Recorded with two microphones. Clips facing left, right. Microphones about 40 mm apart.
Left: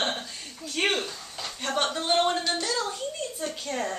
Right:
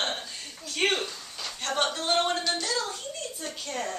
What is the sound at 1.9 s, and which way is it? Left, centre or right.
Speech, centre.